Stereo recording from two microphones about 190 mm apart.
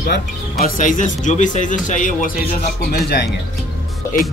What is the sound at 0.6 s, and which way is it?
Speech, 45° left (ahead or behind).